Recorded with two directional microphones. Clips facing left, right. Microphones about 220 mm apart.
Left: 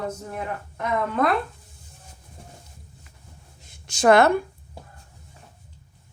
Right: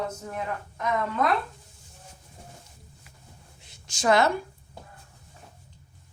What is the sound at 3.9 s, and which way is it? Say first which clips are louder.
Speech: left 6 dB; 60° left (ahead or behind).